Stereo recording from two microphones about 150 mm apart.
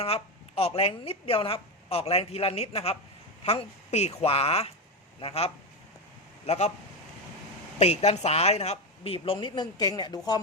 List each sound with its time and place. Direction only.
0.0 s speech: 40° left (ahead or behind)
7.8 s speech: 45° left (ahead or behind); by 10.2 s 25° left (ahead or behind)